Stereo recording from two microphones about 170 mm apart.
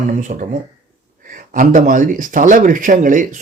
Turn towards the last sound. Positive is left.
turn(degrees=-50)  # may be behind; listen again after turning